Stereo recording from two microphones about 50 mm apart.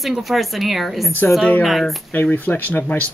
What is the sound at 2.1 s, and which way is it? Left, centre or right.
Speech, left.